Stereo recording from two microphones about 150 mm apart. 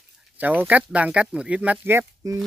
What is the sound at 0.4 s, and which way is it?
Speech, 10° right (ahead or behind).